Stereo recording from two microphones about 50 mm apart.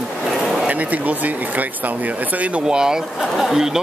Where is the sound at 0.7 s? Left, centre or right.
Right.